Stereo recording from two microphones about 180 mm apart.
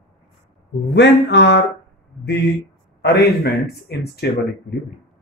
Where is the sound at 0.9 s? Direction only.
75° left (ahead or behind).